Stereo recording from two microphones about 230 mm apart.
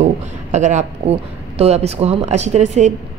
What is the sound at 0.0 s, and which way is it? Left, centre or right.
A man's voice, right.